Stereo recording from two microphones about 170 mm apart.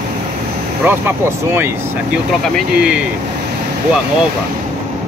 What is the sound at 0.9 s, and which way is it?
Speech, 10° right (ahead or behind).